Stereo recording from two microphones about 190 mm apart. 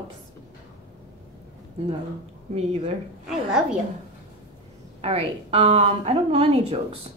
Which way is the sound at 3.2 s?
Centre (ahead or behind).